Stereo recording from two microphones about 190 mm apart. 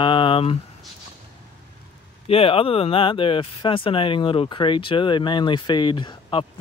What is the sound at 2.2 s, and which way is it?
Speech, 30° left (ahead or behind).